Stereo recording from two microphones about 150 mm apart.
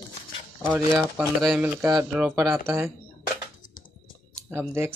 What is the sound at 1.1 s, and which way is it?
Speech, 5° right (ahead or behind).